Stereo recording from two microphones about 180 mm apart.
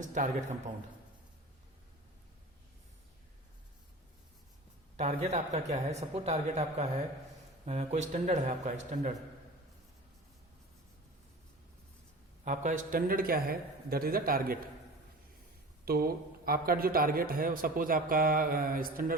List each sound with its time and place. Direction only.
0.0 s a man's voice: 45° right (ahead or behind)
4.9 s a man's voice: 40° right (ahead or behind)
12.5 s a man's voice: 45° right (ahead or behind)
15.9 s a man's voice: 55° right (ahead or behind)